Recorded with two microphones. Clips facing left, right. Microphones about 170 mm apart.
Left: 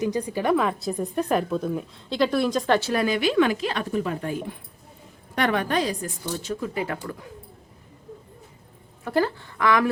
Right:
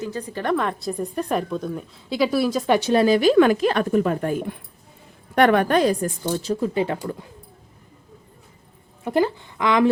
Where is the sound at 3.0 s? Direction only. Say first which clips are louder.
Right 6 dB; 40° right (ahead or behind).